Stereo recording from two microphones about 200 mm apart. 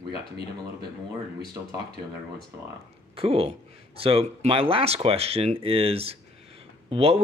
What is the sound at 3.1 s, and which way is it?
Speech, 30° right (ahead or behind).